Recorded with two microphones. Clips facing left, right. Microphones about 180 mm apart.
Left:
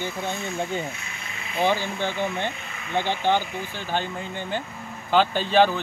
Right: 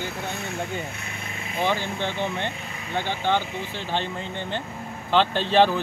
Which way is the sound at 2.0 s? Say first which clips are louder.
Left 1 dB; 10° left (ahead or behind).